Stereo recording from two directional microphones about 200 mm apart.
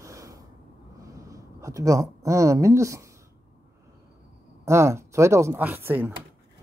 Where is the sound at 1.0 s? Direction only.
15° right (ahead or behind).